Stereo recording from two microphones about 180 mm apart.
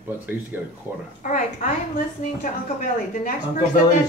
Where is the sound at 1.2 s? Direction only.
45° left (ahead or behind).